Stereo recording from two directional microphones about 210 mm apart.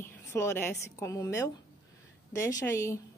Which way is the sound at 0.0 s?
10° left (ahead or behind).